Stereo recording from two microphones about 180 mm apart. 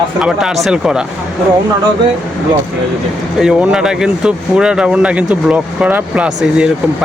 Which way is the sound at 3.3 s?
5° right (ahead or behind).